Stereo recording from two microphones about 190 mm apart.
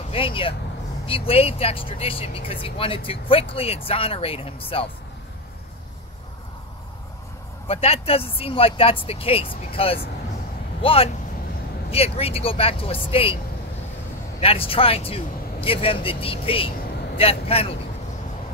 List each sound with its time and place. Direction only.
0.1 s speech: 30° left (ahead or behind)
7.6 s a woman's voice: 30° left (ahead or behind)
14.4 s a woman's voice: 30° left (ahead or behind)